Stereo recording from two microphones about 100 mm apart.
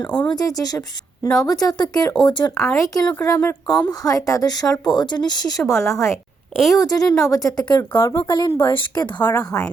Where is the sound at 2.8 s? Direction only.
40° left (ahead or behind).